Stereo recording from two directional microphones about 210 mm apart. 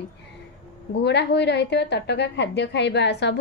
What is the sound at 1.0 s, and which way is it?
A woman's voice, 55° left (ahead or behind).